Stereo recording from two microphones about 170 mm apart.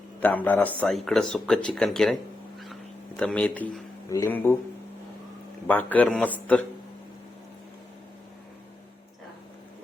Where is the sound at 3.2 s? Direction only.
5° left (ahead or behind).